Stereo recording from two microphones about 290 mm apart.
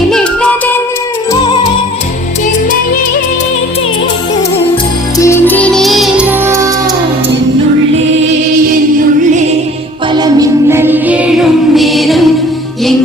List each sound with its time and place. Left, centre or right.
0.1 s music: centre
1.3 s music: centre
4.7 s music: centre
10.1 s music: centre